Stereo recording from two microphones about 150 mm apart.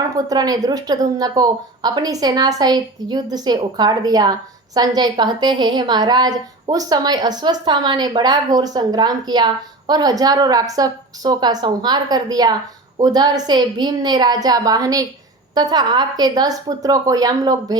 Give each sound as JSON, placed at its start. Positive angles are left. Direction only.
{"t": 0.3, "sound": "speech", "side_deg": -25}